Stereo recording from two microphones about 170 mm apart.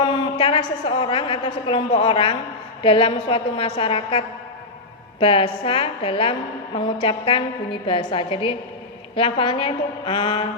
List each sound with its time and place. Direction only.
0.0 s a woman's voice: 30° left (ahead or behind)
5.2 s a woman's voice: 30° left (ahead or behind)